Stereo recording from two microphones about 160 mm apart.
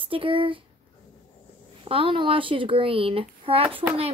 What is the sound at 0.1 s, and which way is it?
Speech, 35° right (ahead or behind).